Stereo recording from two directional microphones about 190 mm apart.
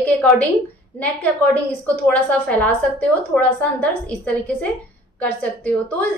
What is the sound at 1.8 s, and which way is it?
A woman's voice, 5° left (ahead or behind).